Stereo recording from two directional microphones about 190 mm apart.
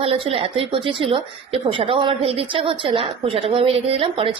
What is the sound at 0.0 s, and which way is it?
A woman's voice, 30° right (ahead or behind).